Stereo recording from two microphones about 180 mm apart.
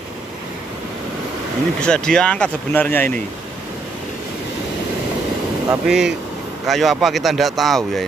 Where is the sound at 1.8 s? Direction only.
5° left (ahead or behind).